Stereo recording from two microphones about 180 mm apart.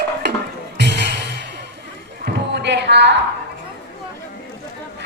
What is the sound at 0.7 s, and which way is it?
Music, 70° right (ahead or behind).